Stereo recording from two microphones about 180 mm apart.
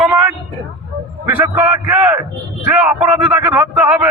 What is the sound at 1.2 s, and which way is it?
A man's voice, 10° right (ahead or behind).